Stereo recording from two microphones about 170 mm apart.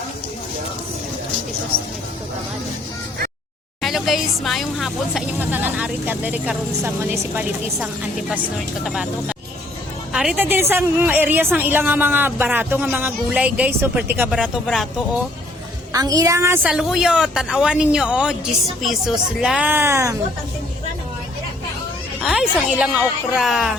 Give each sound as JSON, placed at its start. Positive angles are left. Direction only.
{"t": 1.7, "sound": "speech", "side_deg": -35}
{"t": 3.8, "sound": "a woman's voice", "side_deg": 0}
{"t": 15.9, "sound": "a woman's voice", "side_deg": -20}
{"t": 16.7, "sound": "a woman's voice", "side_deg": -5}
{"t": 22.3, "sound": "a woman's voice", "side_deg": -5}